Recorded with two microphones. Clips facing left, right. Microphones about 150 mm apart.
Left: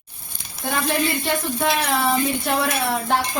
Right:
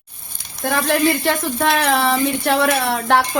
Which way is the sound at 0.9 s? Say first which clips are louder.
Right 6 dB; 85° right.